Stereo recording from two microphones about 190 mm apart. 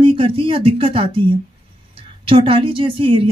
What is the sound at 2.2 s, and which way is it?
Speech, 30° right (ahead or behind).